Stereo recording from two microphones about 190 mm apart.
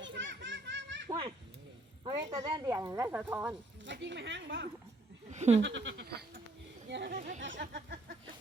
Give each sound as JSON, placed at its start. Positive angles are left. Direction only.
{"t": 0.0, "sound": "baby laughter", "side_deg": -70}
{"t": 2.0, "sound": "speech", "side_deg": -20}
{"t": 3.8, "sound": "a woman's voice", "side_deg": -70}
{"t": 5.3, "sound": "a sound", "side_deg": -35}
{"t": 5.6, "sound": "goat", "side_deg": -75}
{"t": 7.1, "sound": "speech", "side_deg": -40}
{"t": 7.4, "sound": "speech", "side_deg": -70}